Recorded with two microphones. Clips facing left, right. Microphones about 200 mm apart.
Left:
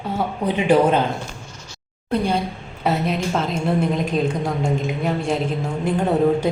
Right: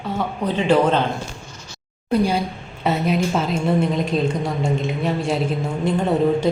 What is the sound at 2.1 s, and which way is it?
A woman's voice, 5° right (ahead or behind).